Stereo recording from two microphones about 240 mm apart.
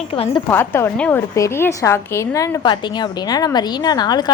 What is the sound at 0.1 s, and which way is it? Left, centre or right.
Speech, left.